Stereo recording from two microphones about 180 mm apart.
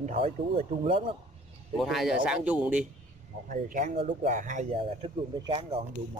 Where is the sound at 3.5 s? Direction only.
45° right (ahead or behind).